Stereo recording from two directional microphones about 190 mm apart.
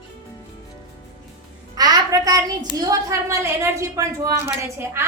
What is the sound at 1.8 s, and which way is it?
A woman's voice, 20° right (ahead or behind).